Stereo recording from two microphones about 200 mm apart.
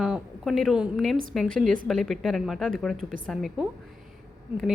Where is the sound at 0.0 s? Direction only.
Centre (ahead or behind).